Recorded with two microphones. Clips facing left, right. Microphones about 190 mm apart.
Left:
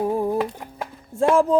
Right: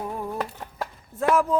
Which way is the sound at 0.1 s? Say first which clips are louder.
Left 8 dB; 30° left (ahead or behind).